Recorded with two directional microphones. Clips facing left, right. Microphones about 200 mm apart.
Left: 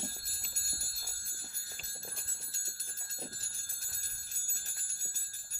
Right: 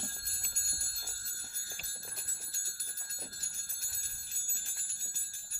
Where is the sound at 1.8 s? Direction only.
25° left (ahead or behind).